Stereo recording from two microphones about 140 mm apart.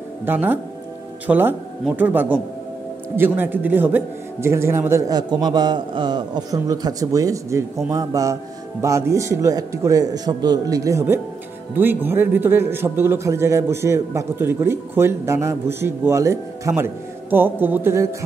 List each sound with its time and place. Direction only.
0.2 s a man's voice: 15° right (ahead or behind)